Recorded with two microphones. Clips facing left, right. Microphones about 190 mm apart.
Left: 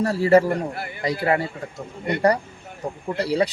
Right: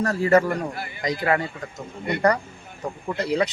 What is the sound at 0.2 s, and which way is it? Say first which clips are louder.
Speech: left 3 dB; 30° left (ahead or behind).